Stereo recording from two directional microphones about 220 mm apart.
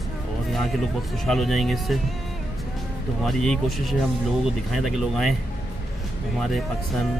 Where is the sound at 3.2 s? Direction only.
Centre (ahead or behind).